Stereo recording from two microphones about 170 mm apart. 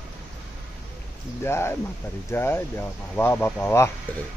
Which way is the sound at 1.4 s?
15° left (ahead or behind).